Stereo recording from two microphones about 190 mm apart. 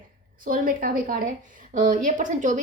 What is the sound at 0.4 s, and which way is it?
A woman's voice, 45° right (ahead or behind).